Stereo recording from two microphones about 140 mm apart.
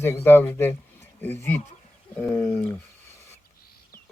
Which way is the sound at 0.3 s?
15° left (ahead or behind).